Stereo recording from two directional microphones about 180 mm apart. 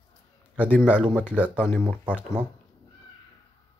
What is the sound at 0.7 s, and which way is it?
Speech, 5° right (ahead or behind).